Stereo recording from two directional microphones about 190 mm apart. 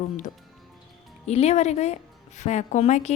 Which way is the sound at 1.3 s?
35° left (ahead or behind).